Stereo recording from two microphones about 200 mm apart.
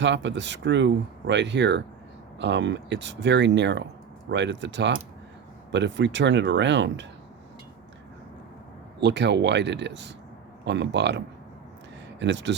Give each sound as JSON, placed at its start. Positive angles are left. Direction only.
{"t": 0.0, "sound": "speech", "side_deg": -65}
{"t": 9.0, "sound": "speech", "side_deg": -60}
{"t": 12.2, "sound": "speech", "side_deg": -65}